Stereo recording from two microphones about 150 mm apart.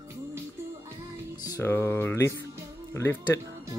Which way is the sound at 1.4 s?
15° left (ahead or behind).